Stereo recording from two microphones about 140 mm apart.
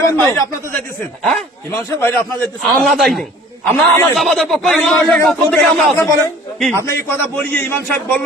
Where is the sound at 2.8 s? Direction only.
Centre (ahead or behind).